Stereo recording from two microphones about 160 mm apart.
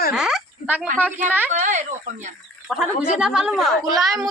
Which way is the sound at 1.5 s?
50° right (ahead or behind).